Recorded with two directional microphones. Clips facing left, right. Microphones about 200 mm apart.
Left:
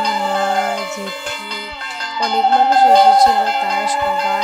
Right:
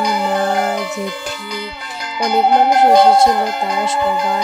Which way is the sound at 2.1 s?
15° right (ahead or behind).